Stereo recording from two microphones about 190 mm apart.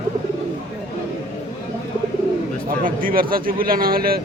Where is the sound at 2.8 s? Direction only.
50° right (ahead or behind).